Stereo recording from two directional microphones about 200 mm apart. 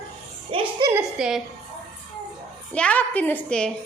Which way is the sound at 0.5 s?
25° right (ahead or behind).